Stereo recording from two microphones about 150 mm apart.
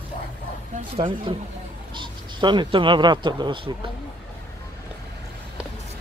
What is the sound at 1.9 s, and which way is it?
Speech, 30° right (ahead or behind).